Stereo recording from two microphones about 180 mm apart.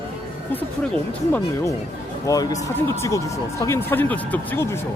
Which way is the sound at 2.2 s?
20° left (ahead or behind).